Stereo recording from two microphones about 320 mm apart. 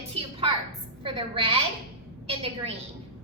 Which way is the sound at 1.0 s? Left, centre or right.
Centre.